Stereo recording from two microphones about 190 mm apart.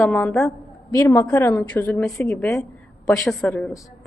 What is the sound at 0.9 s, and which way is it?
A woman's voice, 15° left (ahead or behind).